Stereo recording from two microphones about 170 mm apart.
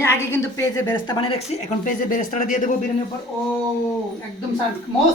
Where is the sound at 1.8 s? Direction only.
50° left (ahead or behind).